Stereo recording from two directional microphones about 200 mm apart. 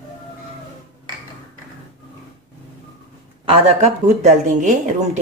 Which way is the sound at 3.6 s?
35° right (ahead or behind).